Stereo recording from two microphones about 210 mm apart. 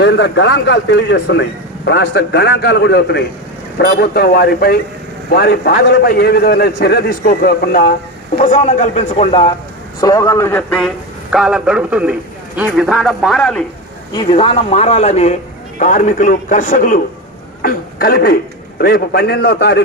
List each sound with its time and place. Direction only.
0.0 s a man's voice: 55° left (ahead or behind); by 9.6 s 25° left (ahead or behind)
10.0 s a man's voice: 15° left (ahead or behind)
14.1 s a man's voice: 20° left (ahead or behind); by 17.0 s 40° left (ahead or behind)
17.6 s a sound: 45° left (ahead or behind)
18.8 s a man's voice: 45° left (ahead or behind)